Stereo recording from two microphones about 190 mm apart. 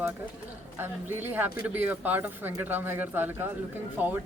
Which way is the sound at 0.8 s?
10° right (ahead or behind).